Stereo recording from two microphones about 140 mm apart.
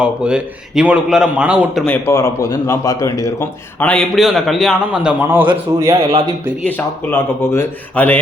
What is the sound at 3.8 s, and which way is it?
A man's voice, 5° left (ahead or behind).